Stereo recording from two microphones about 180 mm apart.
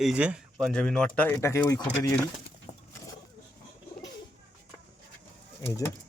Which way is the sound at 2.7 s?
45° left (ahead or behind).